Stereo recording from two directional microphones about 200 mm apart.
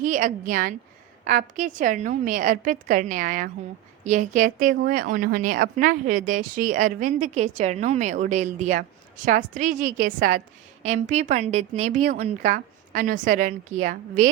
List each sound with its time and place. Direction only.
0.0 s a woman's voice: 40° right (ahead or behind)